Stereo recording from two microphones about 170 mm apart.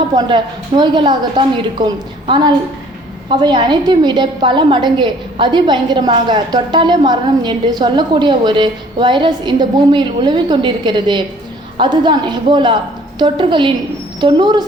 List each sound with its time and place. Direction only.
0.2 s a woman's voice: 25° right (ahead or behind)